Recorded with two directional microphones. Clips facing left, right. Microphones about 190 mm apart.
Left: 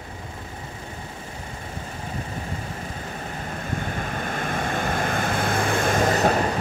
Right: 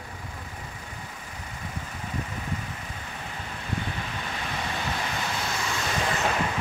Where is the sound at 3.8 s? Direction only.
50° left (ahead or behind).